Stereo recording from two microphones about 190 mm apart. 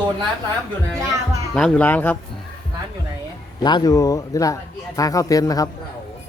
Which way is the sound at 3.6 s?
20° left (ahead or behind).